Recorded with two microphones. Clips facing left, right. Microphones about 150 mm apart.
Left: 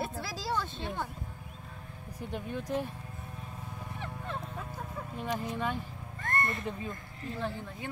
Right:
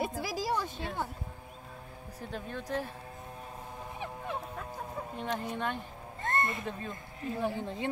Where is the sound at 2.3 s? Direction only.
15° left (ahead or behind).